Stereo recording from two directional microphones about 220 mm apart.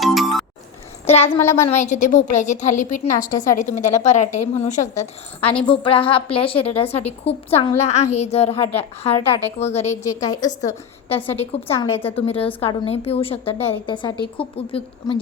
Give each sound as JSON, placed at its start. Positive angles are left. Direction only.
{"t": 0.0, "sound": "music", "side_deg": 0}
{"t": 1.0, "sound": "a woman's voice", "side_deg": 25}
{"t": 1.3, "sound": "a woman's voice", "side_deg": 10}
{"t": 1.8, "sound": "a woman's voice", "side_deg": 35}
{"t": 10.0, "sound": "a woman's voice", "side_deg": 15}
{"t": 11.1, "sound": "a woman's voice", "side_deg": 25}